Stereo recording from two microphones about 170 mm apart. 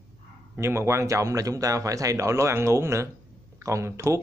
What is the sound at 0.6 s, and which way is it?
A man's voice, 15° right (ahead or behind).